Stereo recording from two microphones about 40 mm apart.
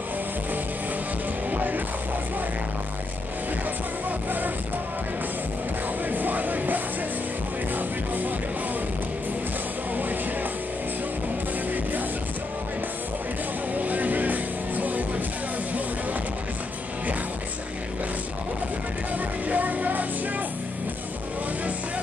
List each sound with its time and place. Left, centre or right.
1.5 s music: right
6.0 s music: right
13.7 s music: right
19.1 s music: right